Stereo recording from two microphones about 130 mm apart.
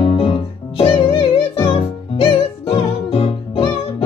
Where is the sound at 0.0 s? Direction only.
45° left (ahead or behind).